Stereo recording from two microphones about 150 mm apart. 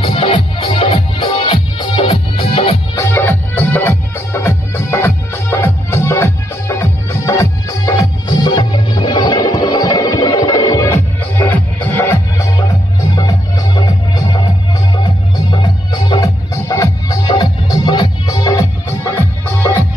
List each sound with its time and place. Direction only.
0.0 s music: 40° left (ahead or behind)
3.0 s music: 15° left (ahead or behind); by 14.5 s 30° left (ahead or behind)
15.5 s music: 30° left (ahead or behind)